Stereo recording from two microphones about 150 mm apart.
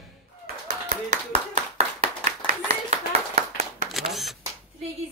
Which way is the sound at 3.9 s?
Centre (ahead or behind).